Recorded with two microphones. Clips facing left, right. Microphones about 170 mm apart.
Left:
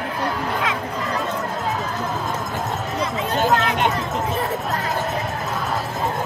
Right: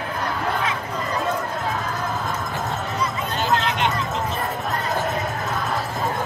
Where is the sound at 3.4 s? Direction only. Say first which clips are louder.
Left 2 dB; 45° left (ahead or behind).